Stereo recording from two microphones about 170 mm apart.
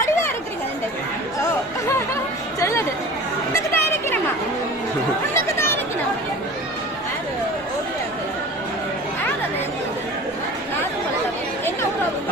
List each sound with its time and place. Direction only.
2.6 s chatter: 15° left (ahead or behind)
3.5 s a sound: 15° left (ahead or behind)
5.3 s chatter: 15° left (ahead or behind)